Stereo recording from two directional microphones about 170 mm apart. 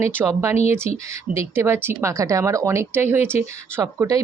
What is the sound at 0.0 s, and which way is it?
A woman's voice, 15° right (ahead or behind).